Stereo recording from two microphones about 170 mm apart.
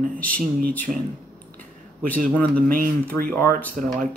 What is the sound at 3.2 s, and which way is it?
Speech, 10° left (ahead or behind).